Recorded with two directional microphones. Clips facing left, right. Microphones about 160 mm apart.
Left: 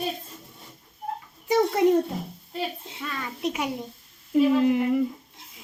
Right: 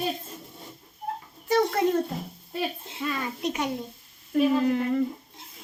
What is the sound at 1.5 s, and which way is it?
Speech, 20° left (ahead or behind).